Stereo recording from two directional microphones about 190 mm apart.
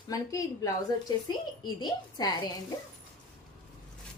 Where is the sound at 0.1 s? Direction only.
15° left (ahead or behind).